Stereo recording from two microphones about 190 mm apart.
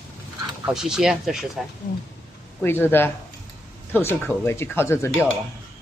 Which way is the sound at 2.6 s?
10° left (ahead or behind).